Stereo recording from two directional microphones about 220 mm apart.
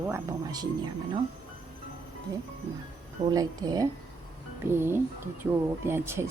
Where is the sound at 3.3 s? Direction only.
15° right (ahead or behind).